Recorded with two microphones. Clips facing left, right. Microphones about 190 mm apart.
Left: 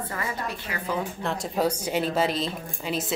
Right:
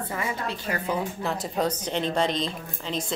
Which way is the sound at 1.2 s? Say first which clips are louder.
Left 1 dB; centre (ahead or behind).